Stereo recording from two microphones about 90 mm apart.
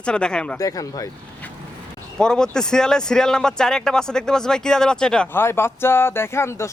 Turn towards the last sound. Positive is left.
turn(degrees=30)  # may be behind; listen again after turning